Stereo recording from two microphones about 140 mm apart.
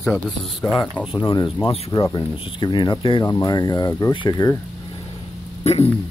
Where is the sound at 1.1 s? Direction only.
35° left (ahead or behind).